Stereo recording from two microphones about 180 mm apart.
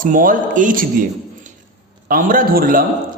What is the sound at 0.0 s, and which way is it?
Speech, 50° right (ahead or behind).